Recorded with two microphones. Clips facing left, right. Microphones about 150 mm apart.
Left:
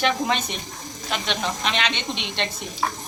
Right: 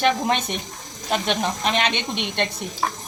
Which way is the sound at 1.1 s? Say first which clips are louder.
Right 4 dB; 40° right (ahead or behind).